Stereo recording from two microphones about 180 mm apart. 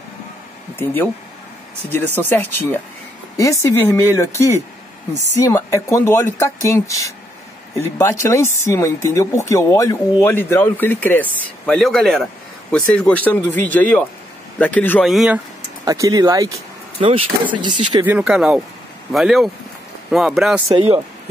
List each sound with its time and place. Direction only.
1.9 s speech: 10° left (ahead or behind)
15.0 s speech: 5° right (ahead or behind)
15.8 s speech: 20° right (ahead or behind)
18.0 s speech: 5° right (ahead or behind)